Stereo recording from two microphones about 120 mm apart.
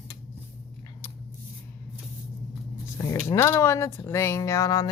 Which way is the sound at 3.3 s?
20° left (ahead or behind).